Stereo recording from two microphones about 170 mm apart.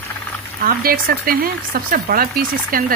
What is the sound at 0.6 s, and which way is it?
Speech, 60° right (ahead or behind).